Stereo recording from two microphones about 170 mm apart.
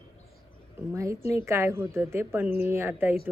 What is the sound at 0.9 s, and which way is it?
A woman's voice, 15° right (ahead or behind).